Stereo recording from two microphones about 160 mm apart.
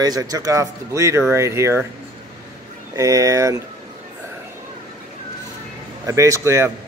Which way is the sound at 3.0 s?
20° right (ahead or behind).